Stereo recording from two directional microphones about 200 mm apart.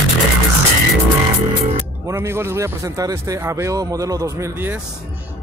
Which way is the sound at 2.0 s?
10° right (ahead or behind).